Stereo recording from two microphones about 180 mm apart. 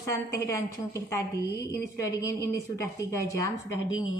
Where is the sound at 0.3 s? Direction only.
15° left (ahead or behind).